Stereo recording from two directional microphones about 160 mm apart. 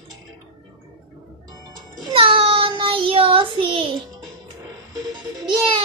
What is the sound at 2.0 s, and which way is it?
Child singing, 35° right (ahead or behind).